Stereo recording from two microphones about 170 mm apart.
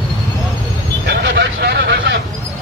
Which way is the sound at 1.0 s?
70° right (ahead or behind).